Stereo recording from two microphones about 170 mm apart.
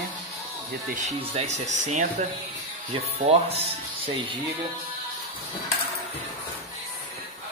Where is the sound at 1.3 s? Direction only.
40° right (ahead or behind).